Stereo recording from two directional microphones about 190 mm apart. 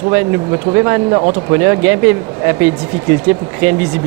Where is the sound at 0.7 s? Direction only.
15° right (ahead or behind).